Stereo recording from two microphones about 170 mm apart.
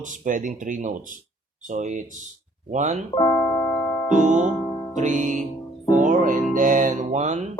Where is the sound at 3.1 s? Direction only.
25° left (ahead or behind).